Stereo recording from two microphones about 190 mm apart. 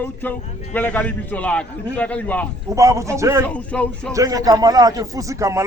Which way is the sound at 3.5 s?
5° left (ahead or behind).